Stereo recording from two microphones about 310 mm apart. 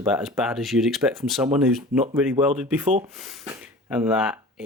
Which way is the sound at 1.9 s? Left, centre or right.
Right.